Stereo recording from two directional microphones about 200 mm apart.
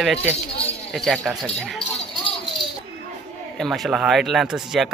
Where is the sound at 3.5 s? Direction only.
Centre (ahead or behind).